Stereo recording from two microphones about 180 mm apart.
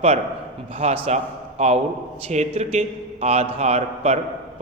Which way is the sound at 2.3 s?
40° right (ahead or behind).